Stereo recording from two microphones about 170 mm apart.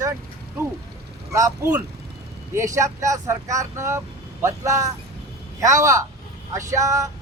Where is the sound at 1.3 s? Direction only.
20° right (ahead or behind).